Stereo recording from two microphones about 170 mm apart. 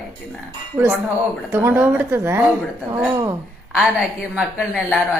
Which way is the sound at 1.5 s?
15° right (ahead or behind).